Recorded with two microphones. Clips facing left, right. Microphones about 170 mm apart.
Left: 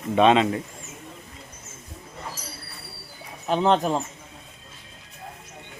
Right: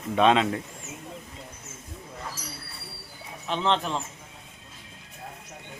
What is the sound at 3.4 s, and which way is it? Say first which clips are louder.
Speech: left 6 dB; 40° left (ahead or behind).